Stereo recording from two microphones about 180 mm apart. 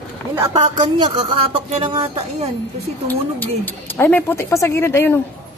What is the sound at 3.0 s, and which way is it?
A woman's voice, 10° left (ahead or behind).